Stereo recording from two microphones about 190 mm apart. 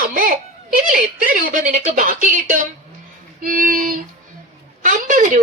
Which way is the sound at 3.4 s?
45° right (ahead or behind).